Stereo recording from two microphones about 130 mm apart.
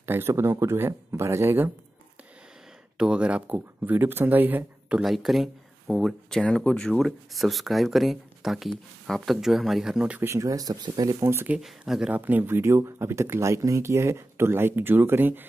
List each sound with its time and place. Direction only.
0.0 s speech: 20° right (ahead or behind)
3.0 s speech: 5° right (ahead or behind)